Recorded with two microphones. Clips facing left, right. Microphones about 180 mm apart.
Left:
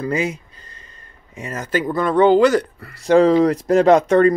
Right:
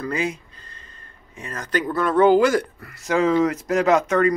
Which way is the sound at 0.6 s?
15° left (ahead or behind).